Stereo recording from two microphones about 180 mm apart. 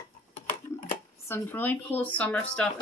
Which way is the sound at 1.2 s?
10° left (ahead or behind).